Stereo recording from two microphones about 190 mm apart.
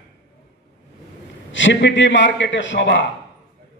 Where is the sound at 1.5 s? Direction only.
75° left (ahead or behind).